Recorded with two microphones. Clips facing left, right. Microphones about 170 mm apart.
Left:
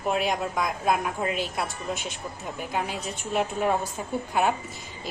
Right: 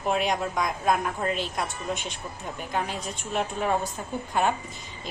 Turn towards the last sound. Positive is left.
turn(degrees=10)  # may be behind; listen again after turning